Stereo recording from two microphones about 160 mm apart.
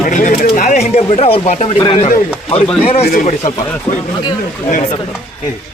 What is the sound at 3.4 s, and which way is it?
Speech, 25° left (ahead or behind).